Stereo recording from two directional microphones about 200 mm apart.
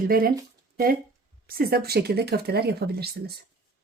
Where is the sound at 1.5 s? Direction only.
50° right (ahead or behind).